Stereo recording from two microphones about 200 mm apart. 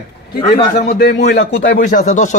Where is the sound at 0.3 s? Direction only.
50° left (ahead or behind).